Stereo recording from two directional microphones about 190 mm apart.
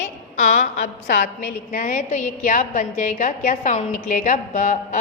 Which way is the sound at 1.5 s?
50° left (ahead or behind).